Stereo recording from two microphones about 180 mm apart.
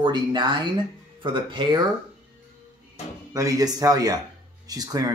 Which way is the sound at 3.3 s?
20° right (ahead or behind).